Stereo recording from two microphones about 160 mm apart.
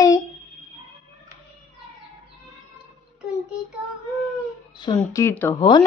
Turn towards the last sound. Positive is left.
turn(degrees=30)  # may be behind; listen again after turning